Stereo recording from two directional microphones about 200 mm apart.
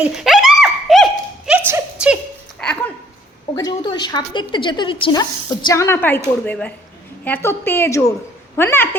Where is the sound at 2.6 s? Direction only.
5° left (ahead or behind).